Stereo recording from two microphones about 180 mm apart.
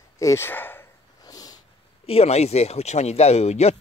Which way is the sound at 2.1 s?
35° left (ahead or behind).